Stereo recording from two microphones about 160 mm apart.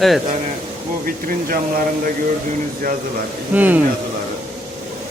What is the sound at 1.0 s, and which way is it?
Speech, 65° right (ahead or behind).